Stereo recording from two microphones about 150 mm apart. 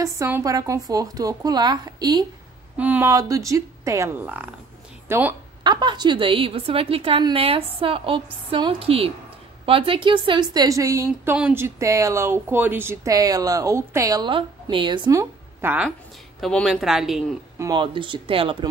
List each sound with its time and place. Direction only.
0.0 s a woman's voice: 20° right (ahead or behind)
2.8 s speech: 10° right (ahead or behind)
3.1 s a woman's voice: 20° right (ahead or behind)
5.6 s a woman's voice: 30° right (ahead or behind)
15.1 s a woman's voice: 10° right (ahead or behind)
16.3 s speech: centre (ahead or behind)
17.6 s a woman's voice: 30° right (ahead or behind)